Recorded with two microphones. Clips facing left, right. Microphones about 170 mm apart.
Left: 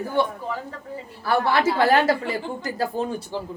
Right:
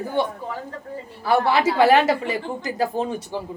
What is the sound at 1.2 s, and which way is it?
A woman's voice, 15° right (ahead or behind).